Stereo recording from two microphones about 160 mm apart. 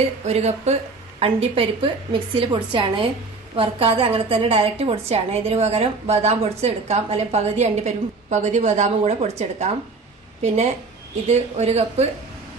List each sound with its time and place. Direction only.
0.3 s a woman's voice: 45° right (ahead or behind)